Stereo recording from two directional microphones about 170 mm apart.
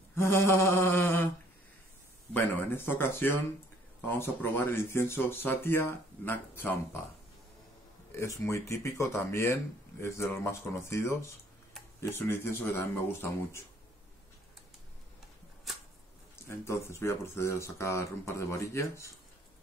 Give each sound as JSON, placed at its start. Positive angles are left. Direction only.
{"t": 0.1, "sound": "speech", "side_deg": 15}
{"t": 2.3, "sound": "speech", "side_deg": 10}
{"t": 8.2, "sound": "speech", "side_deg": 15}
{"t": 16.4, "sound": "speech", "side_deg": 15}